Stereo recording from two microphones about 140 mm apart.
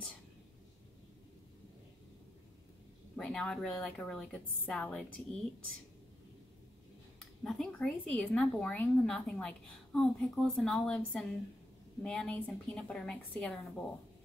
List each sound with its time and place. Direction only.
3.2 s speech: 5° left (ahead or behind)
7.4 s speech: 5° left (ahead or behind)
12.0 s speech: 5° left (ahead or behind)